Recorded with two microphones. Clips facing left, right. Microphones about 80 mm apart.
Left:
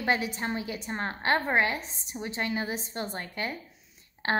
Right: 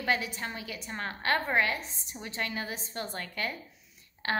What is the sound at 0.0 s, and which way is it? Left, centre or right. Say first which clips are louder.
A woman's voice: left 3 dB; left.